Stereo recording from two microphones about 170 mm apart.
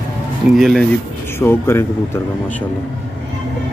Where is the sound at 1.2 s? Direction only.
15° left (ahead or behind).